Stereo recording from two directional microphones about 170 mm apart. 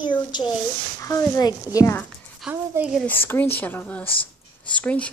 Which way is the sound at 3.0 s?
10° left (ahead or behind).